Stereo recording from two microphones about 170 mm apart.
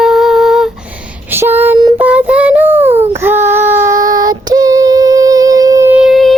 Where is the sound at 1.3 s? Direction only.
10° right (ahead or behind).